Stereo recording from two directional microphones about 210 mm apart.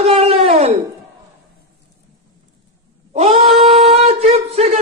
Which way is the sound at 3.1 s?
30° right (ahead or behind).